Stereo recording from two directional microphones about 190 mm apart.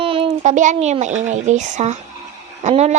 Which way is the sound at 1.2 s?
40° right (ahead or behind).